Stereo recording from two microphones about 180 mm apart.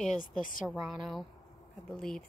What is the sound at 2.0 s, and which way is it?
Speech, 5° left (ahead or behind).